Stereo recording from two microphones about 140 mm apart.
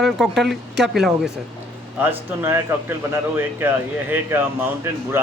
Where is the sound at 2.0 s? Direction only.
15° right (ahead or behind).